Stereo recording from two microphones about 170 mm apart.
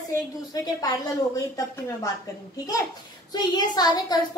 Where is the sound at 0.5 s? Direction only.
20° left (ahead or behind).